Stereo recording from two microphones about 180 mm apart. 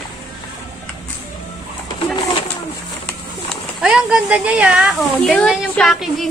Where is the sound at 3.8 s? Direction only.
5° right (ahead or behind).